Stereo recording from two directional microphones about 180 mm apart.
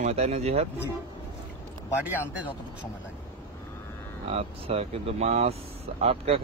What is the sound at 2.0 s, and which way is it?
Speech, 10° right (ahead or behind).